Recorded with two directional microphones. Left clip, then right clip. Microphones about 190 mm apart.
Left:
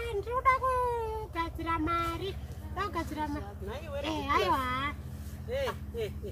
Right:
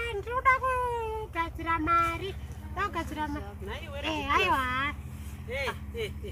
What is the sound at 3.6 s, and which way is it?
Speech, 20° right (ahead or behind).